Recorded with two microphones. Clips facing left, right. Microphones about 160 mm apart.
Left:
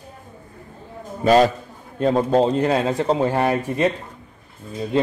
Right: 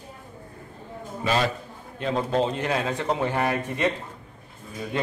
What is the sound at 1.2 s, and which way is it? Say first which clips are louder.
A man's voice: left 10 dB; 40° left (ahead or behind).